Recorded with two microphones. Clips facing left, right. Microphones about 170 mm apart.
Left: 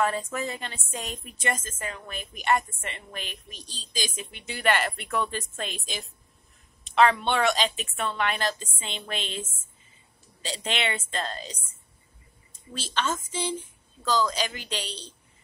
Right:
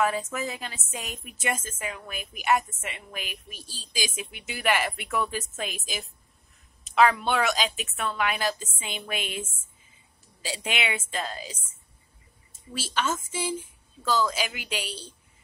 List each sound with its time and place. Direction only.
0.0 s a woman's voice: 5° right (ahead or behind)
12.7 s a woman's voice: 5° right (ahead or behind)